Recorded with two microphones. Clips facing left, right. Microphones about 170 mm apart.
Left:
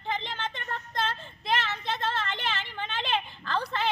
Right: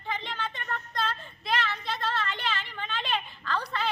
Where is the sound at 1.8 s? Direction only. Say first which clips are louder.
Left 1 dB; 20° left (ahead or behind).